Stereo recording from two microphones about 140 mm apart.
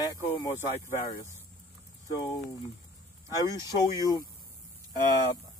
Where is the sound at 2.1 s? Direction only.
25° left (ahead or behind).